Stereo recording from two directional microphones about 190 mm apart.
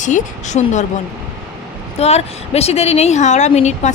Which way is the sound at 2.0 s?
35° left (ahead or behind).